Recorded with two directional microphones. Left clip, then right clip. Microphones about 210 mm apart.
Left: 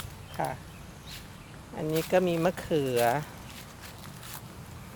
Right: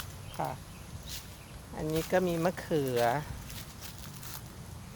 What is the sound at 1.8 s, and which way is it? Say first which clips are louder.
Speech: left 4 dB; 5° left (ahead or behind).